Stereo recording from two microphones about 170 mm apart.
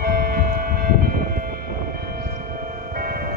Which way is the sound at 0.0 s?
60° right (ahead or behind).